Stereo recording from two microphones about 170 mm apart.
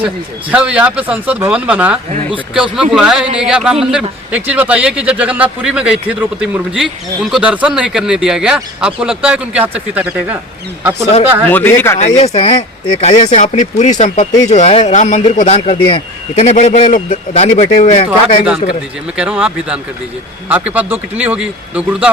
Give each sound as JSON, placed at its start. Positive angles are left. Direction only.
{"t": 0.5, "sound": "a man's voice", "side_deg": -5}
{"t": 11.4, "sound": "speech", "side_deg": 10}
{"t": 11.9, "sound": "speech", "side_deg": 40}
{"t": 19.1, "sound": "speech", "side_deg": -5}